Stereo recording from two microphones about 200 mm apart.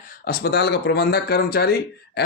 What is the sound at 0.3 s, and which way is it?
A man's voice, 55° left (ahead or behind).